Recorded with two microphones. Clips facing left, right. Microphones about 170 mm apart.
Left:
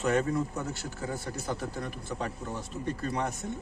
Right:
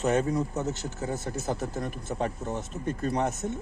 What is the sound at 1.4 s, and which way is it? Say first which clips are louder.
Speech: right 3 dB; 45° right (ahead or behind).